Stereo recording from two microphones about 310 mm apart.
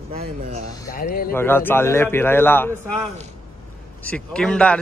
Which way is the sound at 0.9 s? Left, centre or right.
Left.